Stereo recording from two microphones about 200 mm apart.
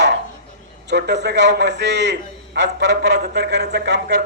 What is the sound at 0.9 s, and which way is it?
A man's voice, 60° right (ahead or behind).